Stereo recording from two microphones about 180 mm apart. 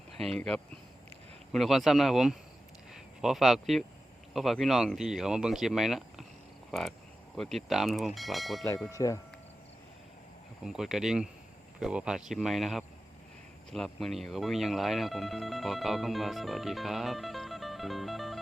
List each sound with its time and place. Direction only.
0.2 s speech: centre (ahead or behind)
8.9 s speech: 20° left (ahead or behind)
10.7 s speech: centre (ahead or behind)